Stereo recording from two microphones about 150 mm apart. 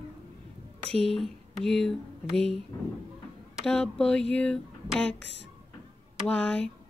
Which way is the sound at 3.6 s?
5° left (ahead or behind).